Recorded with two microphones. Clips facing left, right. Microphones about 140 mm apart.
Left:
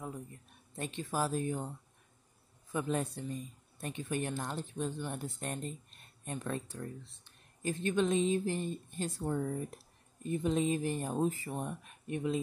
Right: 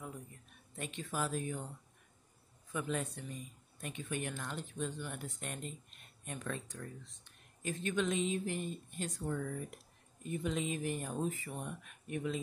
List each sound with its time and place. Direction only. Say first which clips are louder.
0.7 s speech: left 4 dB; 35° left (ahead or behind)
2.7 s speech: left 4 dB; 35° left (ahead or behind)